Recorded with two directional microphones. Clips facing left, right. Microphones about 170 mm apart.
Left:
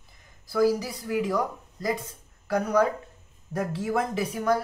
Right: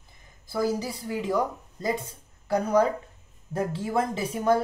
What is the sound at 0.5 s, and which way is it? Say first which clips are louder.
Speech: left 4 dB; 25° right (ahead or behind).